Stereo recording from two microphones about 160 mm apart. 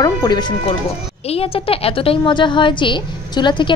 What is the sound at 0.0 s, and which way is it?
Speech, 25° left (ahead or behind).